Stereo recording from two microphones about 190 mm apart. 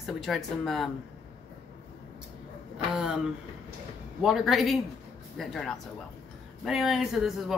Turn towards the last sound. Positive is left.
turn(degrees=0)  # may be behind; listen again after turning